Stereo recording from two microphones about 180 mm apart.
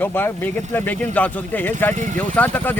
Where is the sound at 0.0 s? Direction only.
10° left (ahead or behind).